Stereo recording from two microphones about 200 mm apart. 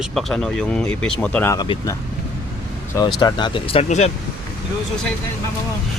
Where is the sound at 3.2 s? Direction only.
25° left (ahead or behind).